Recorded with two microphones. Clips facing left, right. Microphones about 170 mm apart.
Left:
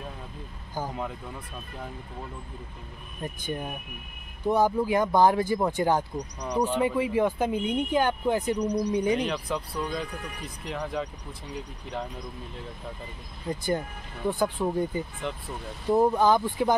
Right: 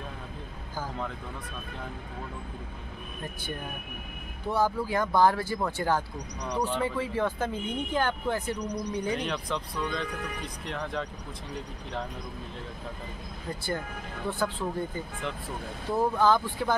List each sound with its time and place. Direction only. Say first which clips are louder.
0.7 s speech: left 3 dB; 15° left (ahead or behind)
4.5 s speech: left 4 dB; 15° left (ahead or behind)
13.7 s speech: left 4 dB; 15° left (ahead or behind)